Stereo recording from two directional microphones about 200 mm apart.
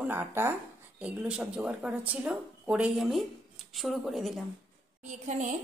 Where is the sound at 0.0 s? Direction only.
10° right (ahead or behind).